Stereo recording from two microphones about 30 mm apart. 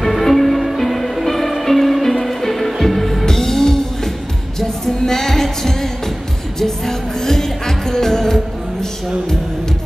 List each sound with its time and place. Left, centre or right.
0.0 s music: centre
3.3 s music: centre